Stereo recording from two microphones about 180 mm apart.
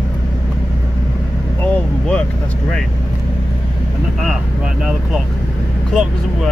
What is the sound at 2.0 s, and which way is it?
Speech, 5° left (ahead or behind).